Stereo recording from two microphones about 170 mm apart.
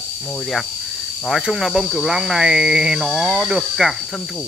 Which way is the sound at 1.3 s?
Centre (ahead or behind).